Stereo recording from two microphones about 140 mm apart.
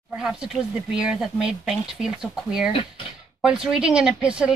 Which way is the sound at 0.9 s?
5° right (ahead or behind).